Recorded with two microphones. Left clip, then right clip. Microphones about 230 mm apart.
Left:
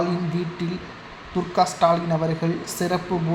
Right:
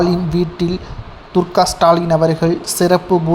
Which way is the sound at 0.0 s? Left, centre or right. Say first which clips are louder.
Right 9 dB; right.